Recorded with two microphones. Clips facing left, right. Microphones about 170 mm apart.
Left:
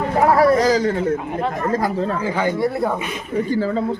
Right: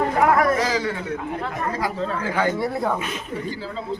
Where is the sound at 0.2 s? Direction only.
30° left (ahead or behind).